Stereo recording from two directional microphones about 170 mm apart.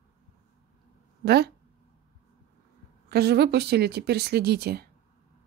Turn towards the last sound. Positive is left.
turn(degrees=-70)  # may be behind; listen again after turning